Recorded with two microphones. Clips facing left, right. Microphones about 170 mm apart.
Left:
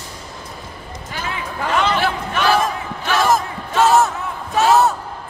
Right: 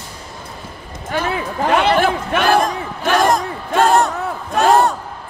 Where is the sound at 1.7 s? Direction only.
60° right (ahead or behind).